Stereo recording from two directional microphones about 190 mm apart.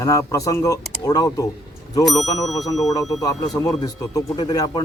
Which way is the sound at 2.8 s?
20° left (ahead or behind).